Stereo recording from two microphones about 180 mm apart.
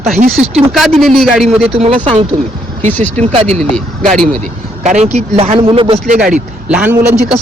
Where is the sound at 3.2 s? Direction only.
35° right (ahead or behind).